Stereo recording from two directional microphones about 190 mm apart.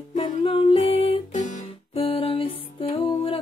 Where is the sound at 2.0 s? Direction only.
30° left (ahead or behind).